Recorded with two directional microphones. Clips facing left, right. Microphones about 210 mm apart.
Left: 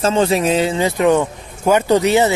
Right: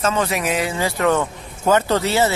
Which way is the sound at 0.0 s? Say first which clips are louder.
Left 6 dB; 30° left (ahead or behind).